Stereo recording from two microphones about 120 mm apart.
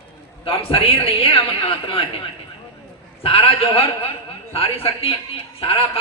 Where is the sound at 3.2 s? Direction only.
50° left (ahead or behind).